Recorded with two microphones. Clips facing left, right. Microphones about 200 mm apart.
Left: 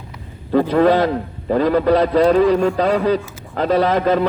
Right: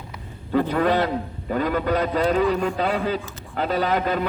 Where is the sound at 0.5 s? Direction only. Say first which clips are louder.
Left 6 dB; 35° left (ahead or behind).